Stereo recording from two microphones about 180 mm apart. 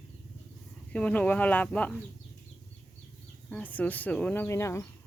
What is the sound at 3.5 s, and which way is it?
Speech, 10° left (ahead or behind).